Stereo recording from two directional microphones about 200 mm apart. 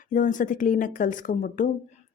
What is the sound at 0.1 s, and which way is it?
Speech, 40° left (ahead or behind).